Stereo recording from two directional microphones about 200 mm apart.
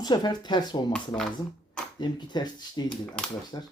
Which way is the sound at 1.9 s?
20° left (ahead or behind).